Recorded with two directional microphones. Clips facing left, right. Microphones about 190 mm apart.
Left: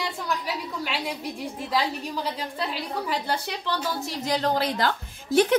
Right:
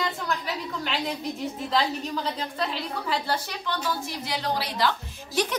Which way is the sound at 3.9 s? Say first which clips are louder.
Left 5 dB; 45° left (ahead or behind).